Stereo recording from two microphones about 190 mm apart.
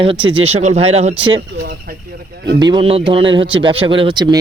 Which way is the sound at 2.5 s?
25° right (ahead or behind).